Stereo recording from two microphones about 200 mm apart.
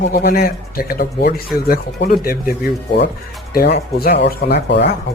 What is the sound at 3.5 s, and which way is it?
Speech, 50° left (ahead or behind).